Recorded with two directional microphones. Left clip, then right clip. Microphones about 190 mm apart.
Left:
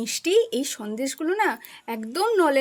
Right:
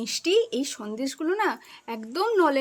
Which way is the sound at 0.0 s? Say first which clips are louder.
Left 2 dB; 10° left (ahead or behind).